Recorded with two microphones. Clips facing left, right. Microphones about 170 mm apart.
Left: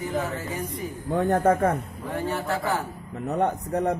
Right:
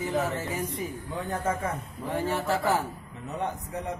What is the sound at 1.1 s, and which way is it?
Speech, 60° left (ahead or behind).